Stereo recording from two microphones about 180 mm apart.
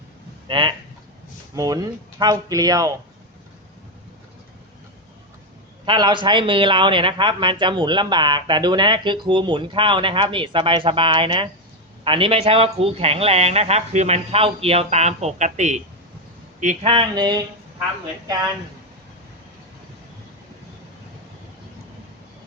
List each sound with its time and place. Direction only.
0.4 s speech: 30° right (ahead or behind)
5.8 s a man's voice: 25° right (ahead or behind); by 16.9 s 45° right (ahead or behind)
16.9 s speech: 25° right (ahead or behind)